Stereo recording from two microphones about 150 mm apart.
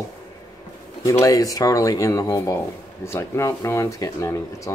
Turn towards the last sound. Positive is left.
turn(degrees=20)  # may be behind; listen again after turning